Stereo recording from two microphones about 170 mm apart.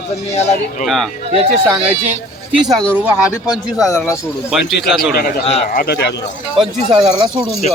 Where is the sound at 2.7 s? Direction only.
5° left (ahead or behind).